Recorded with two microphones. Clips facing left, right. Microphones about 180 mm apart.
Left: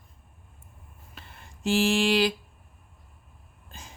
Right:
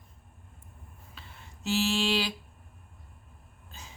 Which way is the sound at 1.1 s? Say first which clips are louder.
Left 3 dB; 50° left (ahead or behind).